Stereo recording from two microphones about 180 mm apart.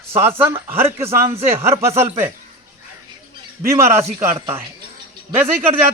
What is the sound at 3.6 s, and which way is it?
Speech, 15° right (ahead or behind).